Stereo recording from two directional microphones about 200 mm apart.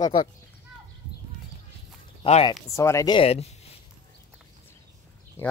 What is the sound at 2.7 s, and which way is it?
Speech, 15° left (ahead or behind).